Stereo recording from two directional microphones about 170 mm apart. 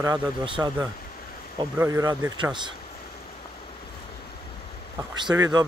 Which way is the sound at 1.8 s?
20° right (ahead or behind).